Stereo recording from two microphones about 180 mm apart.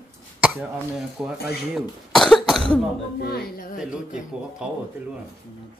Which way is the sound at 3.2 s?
60° left (ahead or behind).